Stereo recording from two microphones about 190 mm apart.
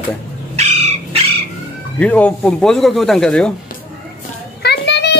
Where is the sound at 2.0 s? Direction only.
5° left (ahead or behind).